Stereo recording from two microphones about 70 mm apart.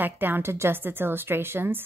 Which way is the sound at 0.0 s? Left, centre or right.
Right.